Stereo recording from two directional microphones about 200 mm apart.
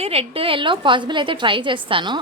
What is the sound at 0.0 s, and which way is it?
A woman's voice, 30° right (ahead or behind).